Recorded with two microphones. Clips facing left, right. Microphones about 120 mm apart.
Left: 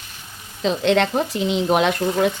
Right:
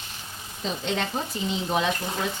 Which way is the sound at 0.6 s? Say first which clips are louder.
Left 11 dB; 90° left.